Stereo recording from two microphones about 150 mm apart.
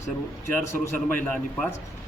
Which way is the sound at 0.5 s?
15° left (ahead or behind).